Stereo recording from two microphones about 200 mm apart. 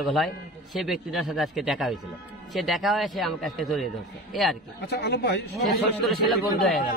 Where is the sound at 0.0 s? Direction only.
Centre (ahead or behind).